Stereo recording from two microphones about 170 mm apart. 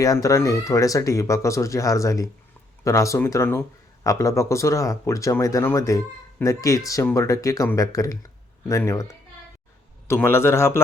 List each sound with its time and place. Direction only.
0.0 s speech: 20° left (ahead or behind)
10.1 s speech: 15° left (ahead or behind)